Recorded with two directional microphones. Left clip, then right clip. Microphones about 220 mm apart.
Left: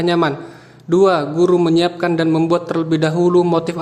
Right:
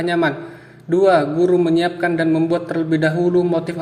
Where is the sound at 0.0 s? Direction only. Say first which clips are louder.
Left 2 dB; 25° left (ahead or behind).